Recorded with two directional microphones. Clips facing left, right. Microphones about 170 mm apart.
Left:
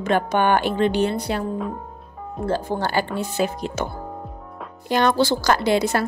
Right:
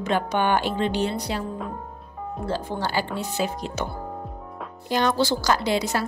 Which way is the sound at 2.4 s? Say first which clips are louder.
Left 5 dB; 50° left (ahead or behind).